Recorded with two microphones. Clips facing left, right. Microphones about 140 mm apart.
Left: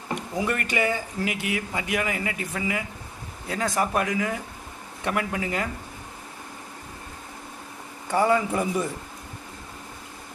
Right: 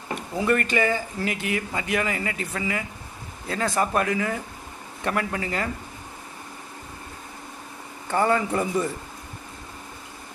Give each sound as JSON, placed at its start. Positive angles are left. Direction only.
{"t": 0.3, "sound": "speech", "side_deg": 10}
{"t": 8.1, "sound": "speech", "side_deg": 5}